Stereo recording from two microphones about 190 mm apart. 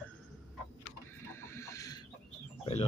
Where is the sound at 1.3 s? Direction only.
15° left (ahead or behind).